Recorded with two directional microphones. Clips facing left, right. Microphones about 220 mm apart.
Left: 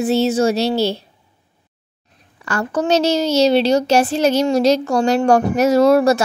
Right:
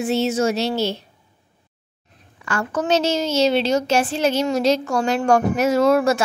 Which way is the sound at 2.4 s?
40° left (ahead or behind).